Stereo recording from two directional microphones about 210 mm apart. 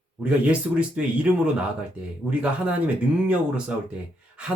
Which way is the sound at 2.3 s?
5° right (ahead or behind).